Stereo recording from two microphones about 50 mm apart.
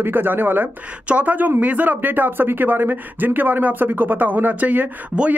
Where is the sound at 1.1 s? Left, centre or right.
Right.